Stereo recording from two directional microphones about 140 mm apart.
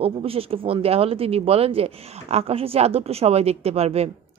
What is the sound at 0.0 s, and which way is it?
Speech, 45° right (ahead or behind).